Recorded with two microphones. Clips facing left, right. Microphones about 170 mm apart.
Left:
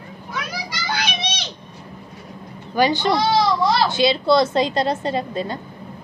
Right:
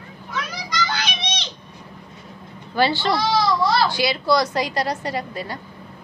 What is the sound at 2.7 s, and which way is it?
Speech, 15° left (ahead or behind).